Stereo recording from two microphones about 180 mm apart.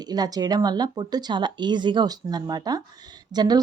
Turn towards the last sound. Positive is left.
turn(degrees=-25)  # may be behind; listen again after turning